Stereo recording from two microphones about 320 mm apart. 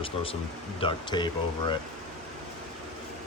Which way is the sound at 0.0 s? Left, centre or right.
Centre.